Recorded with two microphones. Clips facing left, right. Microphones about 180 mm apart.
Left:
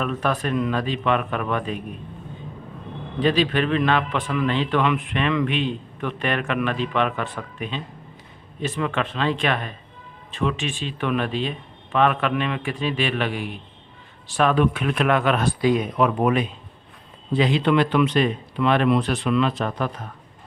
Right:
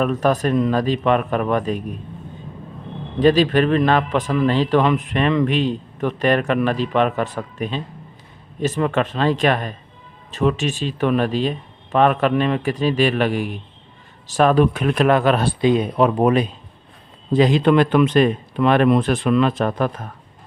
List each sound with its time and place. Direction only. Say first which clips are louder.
0.0 s a man's voice: right 6 dB; 40° right (ahead or behind)
3.2 s a man's voice: right 6 dB; 40° right (ahead or behind)